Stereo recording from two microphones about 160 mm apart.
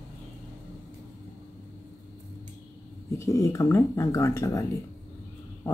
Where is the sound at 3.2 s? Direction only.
20° left (ahead or behind).